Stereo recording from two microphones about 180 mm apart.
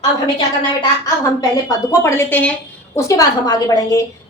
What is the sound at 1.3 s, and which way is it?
A woman's voice, 20° left (ahead or behind).